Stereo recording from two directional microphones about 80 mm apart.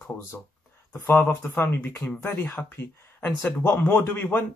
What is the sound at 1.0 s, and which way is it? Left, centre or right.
Speech, left.